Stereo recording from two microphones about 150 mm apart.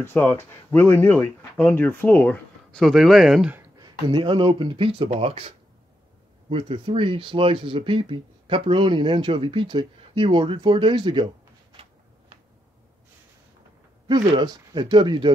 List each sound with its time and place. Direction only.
0.0 s speech: 15° left (ahead or behind); by 3.5 s centre (ahead or behind)
3.8 s speech: 35° right (ahead or behind)
6.5 s speech: 40° right (ahead or behind)
14.0 s speech: 30° right (ahead or behind)